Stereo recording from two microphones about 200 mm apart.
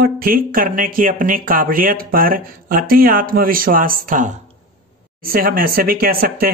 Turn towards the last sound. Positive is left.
turn(degrees=-50)  # may be behind; listen again after turning